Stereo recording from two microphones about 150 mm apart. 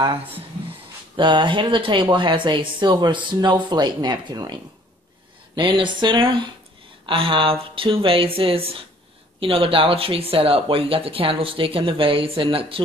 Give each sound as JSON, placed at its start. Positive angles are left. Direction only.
{"t": 1.1, "sound": "speech", "side_deg": -30}
{"t": 5.6, "sound": "speech", "side_deg": -35}